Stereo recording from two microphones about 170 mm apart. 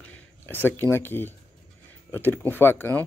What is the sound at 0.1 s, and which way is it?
Speech, 10° left (ahead or behind).